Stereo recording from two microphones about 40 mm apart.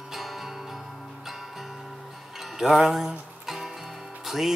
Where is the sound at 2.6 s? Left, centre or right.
Centre.